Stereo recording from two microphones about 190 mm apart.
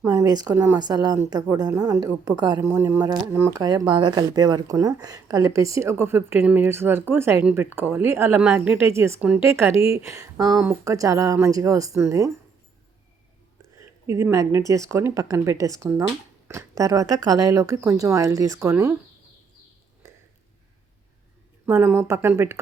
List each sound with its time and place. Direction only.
0.0 s a woman's voice: 20° right (ahead or behind)
13.7 s speech: 15° right (ahead or behind)
20.0 s a sound: 15° right (ahead or behind)
21.7 s speech: 10° right (ahead or behind)